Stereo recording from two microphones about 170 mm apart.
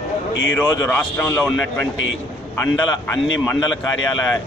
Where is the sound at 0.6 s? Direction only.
10° left (ahead or behind).